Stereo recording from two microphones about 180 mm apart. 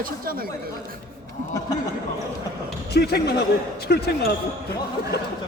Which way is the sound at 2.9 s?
65° left (ahead or behind).